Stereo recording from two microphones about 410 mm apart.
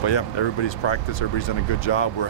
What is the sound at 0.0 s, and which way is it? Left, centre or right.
Speech, left.